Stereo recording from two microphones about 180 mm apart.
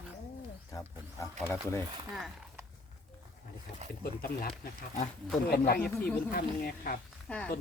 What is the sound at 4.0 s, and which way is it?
Speech, 55° left (ahead or behind).